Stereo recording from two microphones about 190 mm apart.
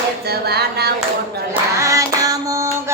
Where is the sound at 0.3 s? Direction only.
55° right (ahead or behind).